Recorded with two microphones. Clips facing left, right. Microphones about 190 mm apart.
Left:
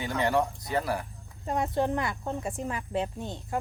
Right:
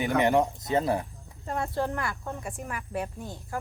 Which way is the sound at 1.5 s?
20° left (ahead or behind).